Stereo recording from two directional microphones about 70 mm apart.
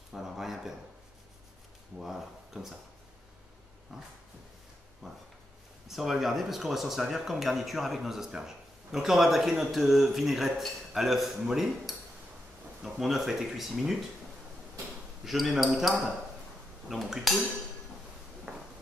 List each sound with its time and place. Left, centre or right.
0.1 s speech: centre
2.0 s speech: centre
3.9 s speech: centre
13.0 s speech: centre
15.2 s speech: centre
16.9 s speech: centre
18.5 s walk: centre